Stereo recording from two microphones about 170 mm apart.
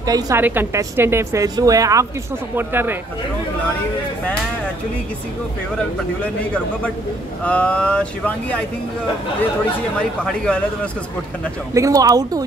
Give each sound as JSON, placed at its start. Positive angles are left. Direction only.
{"t": 0.0, "sound": "a woman's voice", "side_deg": -20}
{"t": 6.2, "sound": "speech", "side_deg": 10}
{"t": 10.2, "sound": "a man's voice", "side_deg": 5}
{"t": 11.7, "sound": "a woman's voice", "side_deg": -20}